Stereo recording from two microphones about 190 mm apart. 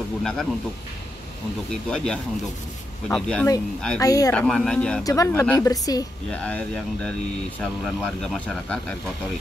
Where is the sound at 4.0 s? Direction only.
20° left (ahead or behind).